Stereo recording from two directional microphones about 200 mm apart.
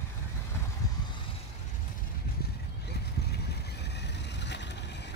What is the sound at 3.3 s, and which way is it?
Vehicle, 55° left (ahead or behind).